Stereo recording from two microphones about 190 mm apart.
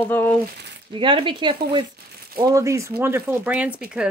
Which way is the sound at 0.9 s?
25° right (ahead or behind).